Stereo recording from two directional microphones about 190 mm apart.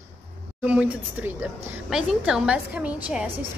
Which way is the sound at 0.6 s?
5° right (ahead or behind).